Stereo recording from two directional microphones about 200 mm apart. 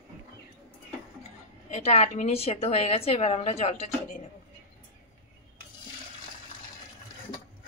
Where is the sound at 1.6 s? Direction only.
35° left (ahead or behind).